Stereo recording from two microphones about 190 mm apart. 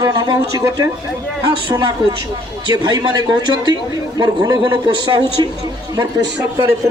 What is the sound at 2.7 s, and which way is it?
A man's voice, 25° right (ahead or behind).